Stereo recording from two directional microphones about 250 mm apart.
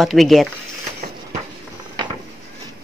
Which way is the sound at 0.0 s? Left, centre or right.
Centre.